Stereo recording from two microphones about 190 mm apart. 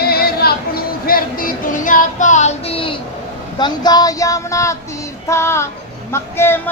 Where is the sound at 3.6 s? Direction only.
20° left (ahead or behind).